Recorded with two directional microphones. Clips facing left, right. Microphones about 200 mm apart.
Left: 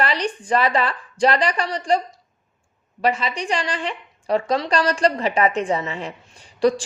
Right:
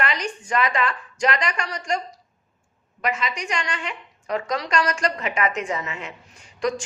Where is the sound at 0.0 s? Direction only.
35° left (ahead or behind).